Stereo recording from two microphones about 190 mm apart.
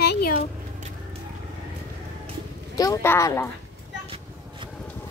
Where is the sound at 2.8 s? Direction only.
15° left (ahead or behind).